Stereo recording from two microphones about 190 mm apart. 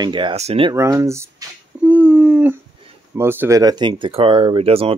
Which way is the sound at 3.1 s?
15° right (ahead or behind).